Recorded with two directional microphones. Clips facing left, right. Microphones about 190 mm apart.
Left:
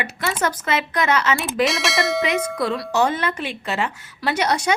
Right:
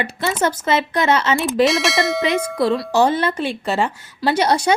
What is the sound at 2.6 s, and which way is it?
A woman's voice, 30° right (ahead or behind).